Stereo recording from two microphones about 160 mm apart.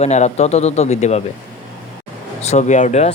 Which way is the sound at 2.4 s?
45° left (ahead or behind).